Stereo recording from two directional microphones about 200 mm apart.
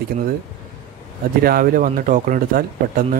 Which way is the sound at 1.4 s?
50° right (ahead or behind).